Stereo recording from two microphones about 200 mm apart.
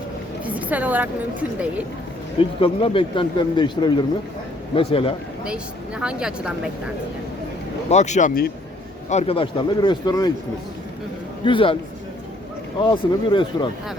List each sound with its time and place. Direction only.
0.4 s a woman's voice: 5° right (ahead or behind)
2.4 s speech: 25° left (ahead or behind)
6.0 s speech: 5° right (ahead or behind)
7.9 s speech: 35° left (ahead or behind); by 10.3 s 20° left (ahead or behind)
11.4 s speech: 25° left (ahead or behind)
12.8 s speech: 25° left (ahead or behind)